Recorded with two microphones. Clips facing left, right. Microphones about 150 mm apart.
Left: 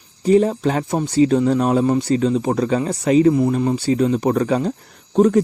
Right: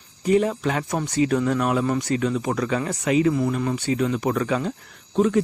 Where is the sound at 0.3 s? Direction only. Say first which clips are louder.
Left 5 dB; 35° left (ahead or behind).